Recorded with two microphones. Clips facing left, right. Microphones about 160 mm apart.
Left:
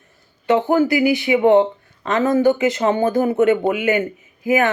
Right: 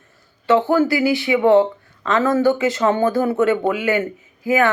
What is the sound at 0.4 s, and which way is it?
Speech, 20° left (ahead or behind).